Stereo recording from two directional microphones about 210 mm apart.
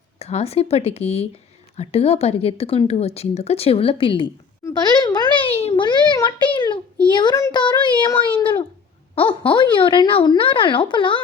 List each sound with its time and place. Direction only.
0.2 s speech: 30° left (ahead or behind)